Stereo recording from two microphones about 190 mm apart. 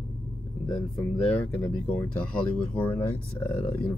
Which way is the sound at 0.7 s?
5° left (ahead or behind).